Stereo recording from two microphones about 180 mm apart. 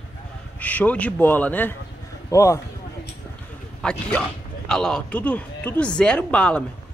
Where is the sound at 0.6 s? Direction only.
10° left (ahead or behind).